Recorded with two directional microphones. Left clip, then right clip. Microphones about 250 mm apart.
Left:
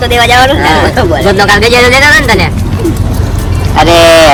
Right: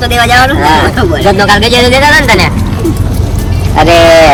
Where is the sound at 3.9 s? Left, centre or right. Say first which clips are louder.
Even; centre.